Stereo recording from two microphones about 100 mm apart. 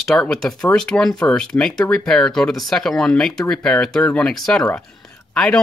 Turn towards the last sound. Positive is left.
turn(degrees=10)  # may be behind; listen again after turning